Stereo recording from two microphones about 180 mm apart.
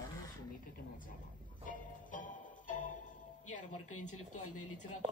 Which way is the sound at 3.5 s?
45° left (ahead or behind).